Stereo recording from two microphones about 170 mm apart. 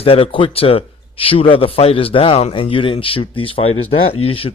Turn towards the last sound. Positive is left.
turn(degrees=35)  # may be behind; listen again after turning